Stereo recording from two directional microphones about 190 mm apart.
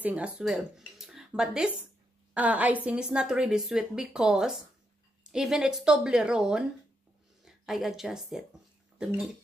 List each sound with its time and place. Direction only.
0.0 s a woman's voice: 5° right (ahead or behind)